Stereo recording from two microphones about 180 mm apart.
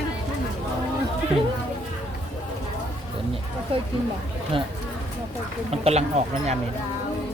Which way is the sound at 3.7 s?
30° right (ahead or behind).